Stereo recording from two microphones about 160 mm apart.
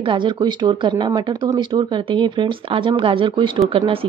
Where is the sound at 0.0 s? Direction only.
30° right (ahead or behind).